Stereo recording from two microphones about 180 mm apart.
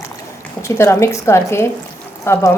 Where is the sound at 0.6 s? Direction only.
15° left (ahead or behind).